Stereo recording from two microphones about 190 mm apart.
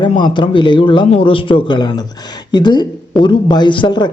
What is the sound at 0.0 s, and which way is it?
Speech, 25° left (ahead or behind).